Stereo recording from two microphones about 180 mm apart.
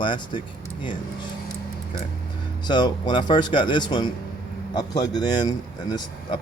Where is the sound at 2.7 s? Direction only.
25° left (ahead or behind).